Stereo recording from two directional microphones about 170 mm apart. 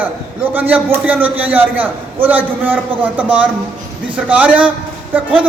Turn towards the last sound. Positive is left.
turn(degrees=-10)  # may be behind; listen again after turning